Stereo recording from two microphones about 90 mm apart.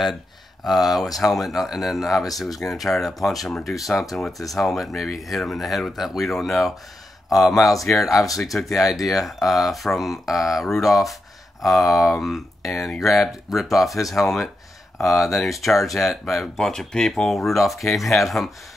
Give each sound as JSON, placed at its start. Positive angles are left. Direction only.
{"t": 0.7, "sound": "speech", "side_deg": 0}
{"t": 7.5, "sound": "speech", "side_deg": 35}
{"t": 7.8, "sound": "speech", "side_deg": 0}